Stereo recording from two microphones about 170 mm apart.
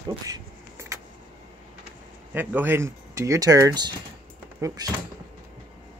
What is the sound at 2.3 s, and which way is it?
Speech, 10° right (ahead or behind).